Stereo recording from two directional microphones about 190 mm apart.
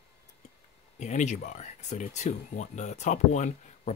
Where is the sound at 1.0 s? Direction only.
40° left (ahead or behind).